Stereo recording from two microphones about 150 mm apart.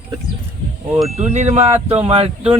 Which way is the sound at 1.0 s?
50° right (ahead or behind).